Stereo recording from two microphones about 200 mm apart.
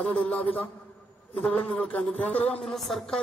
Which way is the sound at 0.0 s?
5° left (ahead or behind).